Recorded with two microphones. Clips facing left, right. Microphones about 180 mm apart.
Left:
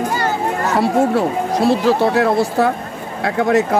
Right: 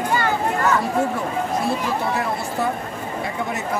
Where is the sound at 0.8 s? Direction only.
85° left.